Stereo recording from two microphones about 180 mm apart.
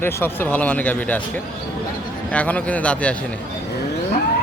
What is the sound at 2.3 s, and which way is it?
Speech, 10° left (ahead or behind).